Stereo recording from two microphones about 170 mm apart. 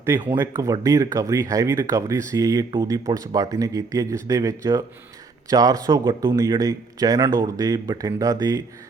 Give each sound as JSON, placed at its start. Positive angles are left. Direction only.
{"t": 0.0, "sound": "speech", "side_deg": -15}